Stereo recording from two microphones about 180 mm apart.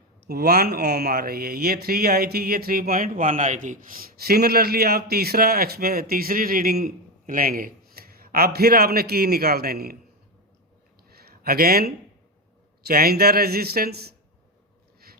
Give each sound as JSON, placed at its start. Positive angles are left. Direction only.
{"t": 0.3, "sound": "speech", "side_deg": -60}
{"t": 11.1, "sound": "a sound", "side_deg": -60}
{"t": 12.8, "sound": "speech", "side_deg": -55}